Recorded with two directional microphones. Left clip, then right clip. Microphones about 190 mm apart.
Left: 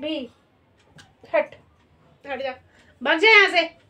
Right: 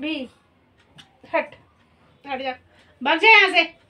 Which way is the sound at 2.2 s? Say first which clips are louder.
Right 1 dB; 20° left (ahead or behind).